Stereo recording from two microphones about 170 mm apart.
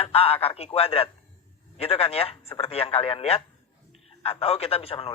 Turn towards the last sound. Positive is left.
turn(degrees=35)  # may be behind; listen again after turning